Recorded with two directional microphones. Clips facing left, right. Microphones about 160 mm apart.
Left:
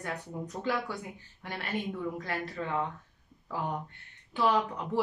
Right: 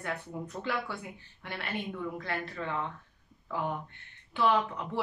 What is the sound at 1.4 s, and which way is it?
Speech, 40° left (ahead or behind).